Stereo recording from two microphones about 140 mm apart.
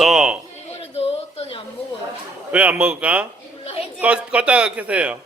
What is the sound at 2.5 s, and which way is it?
A man's voice, 10° right (ahead or behind).